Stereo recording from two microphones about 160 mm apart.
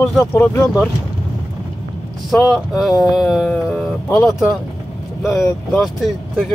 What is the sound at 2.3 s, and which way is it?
Speech, centre (ahead or behind).